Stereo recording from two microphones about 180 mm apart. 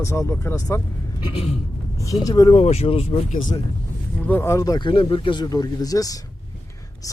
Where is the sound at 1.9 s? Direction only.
20° left (ahead or behind).